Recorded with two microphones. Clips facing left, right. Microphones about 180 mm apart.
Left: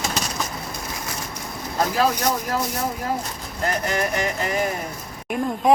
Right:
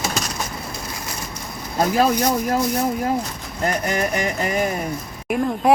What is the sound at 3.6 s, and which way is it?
Music, 20° right (ahead or behind).